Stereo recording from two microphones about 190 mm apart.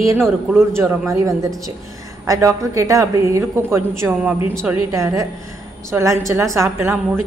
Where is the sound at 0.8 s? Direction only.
15° right (ahead or behind).